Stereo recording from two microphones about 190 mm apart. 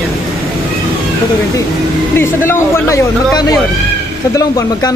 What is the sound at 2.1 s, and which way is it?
Speech, 10° left (ahead or behind).